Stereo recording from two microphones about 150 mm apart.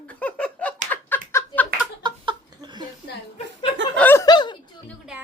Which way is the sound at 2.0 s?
30° right (ahead or behind).